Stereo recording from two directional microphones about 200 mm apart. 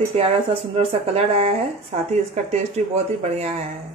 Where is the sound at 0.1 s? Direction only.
30° right (ahead or behind).